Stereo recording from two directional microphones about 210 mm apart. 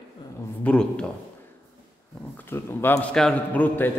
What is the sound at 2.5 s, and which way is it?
A man's voice, 10° left (ahead or behind).